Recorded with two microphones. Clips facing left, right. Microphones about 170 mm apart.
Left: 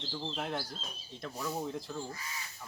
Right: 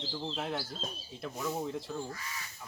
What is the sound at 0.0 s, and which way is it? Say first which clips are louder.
Speech: right 1 dB; 5° right (ahead or behind).